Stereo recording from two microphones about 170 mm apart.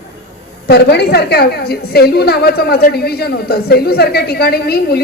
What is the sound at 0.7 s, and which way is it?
A woman's voice, 75° left (ahead or behind).